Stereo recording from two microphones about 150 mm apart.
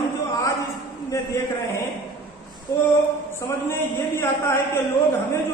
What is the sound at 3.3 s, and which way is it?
A man's voice, 15° left (ahead or behind).